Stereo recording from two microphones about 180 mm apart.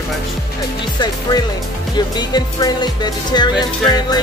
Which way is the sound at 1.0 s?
20° left (ahead or behind).